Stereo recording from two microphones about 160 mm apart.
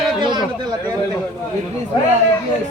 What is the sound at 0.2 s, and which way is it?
Chatter, 30° right (ahead or behind).